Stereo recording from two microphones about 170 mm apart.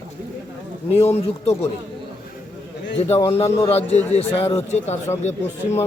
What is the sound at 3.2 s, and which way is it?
A man's voice, 25° left (ahead or behind).